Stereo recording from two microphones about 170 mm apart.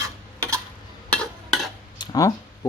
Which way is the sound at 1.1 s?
5° left (ahead or behind).